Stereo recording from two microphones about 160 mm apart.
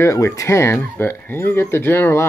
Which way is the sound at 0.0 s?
20° left (ahead or behind).